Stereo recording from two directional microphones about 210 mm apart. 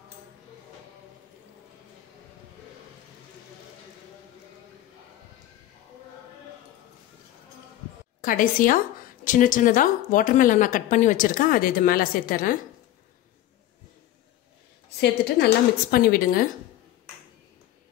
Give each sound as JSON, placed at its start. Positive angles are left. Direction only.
{"t": 8.2, "sound": "a woman's voice", "side_deg": 40}
{"t": 15.0, "sound": "a woman's voice", "side_deg": 50}